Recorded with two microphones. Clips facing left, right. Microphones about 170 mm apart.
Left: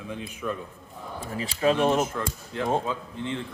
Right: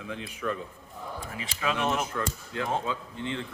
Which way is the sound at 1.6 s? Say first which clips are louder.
Left 7 dB; 35° left (ahead or behind).